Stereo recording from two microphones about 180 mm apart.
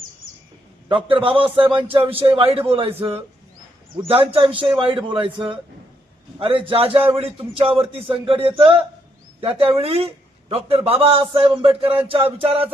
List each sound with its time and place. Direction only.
0.9 s a man's voice: 30° right (ahead or behind)
4.5 s speech: 5° right (ahead or behind)
4.8 s a man's voice: 30° right (ahead or behind)